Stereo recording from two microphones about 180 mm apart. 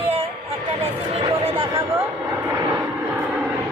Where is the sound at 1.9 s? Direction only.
15° right (ahead or behind).